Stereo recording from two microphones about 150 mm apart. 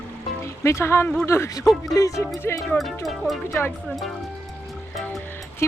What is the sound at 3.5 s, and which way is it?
Speech, 15° left (ahead or behind).